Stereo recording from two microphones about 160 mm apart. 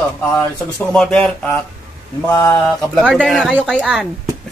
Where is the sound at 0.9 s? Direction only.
5° left (ahead or behind).